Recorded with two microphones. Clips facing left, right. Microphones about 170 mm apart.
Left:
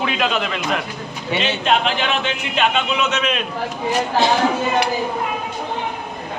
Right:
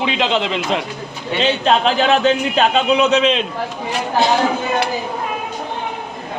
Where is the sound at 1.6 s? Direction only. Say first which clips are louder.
Right 5 dB; 35° right (ahead or behind).